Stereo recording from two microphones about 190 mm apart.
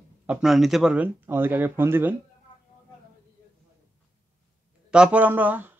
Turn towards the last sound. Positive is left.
turn(degrees=-10)  # may be behind; listen again after turning